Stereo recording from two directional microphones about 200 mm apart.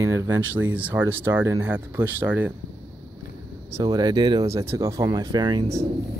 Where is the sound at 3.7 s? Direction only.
20° right (ahead or behind).